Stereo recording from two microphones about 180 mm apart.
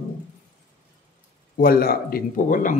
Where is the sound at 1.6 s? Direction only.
55° left (ahead or behind).